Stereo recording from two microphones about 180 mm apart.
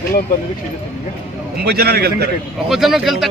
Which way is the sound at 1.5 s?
60° right (ahead or behind).